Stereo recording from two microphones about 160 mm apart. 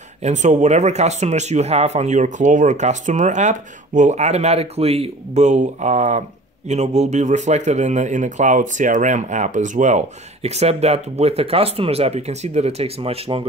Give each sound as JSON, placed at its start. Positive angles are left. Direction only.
{"t": 0.2, "sound": "speech", "side_deg": -45}